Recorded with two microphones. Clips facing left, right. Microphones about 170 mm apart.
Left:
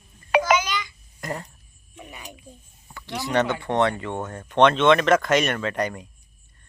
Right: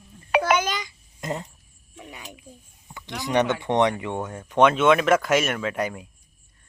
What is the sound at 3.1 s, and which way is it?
Speech, 20° right (ahead or behind).